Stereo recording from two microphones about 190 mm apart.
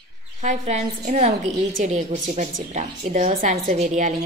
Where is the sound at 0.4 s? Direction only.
40° right (ahead or behind).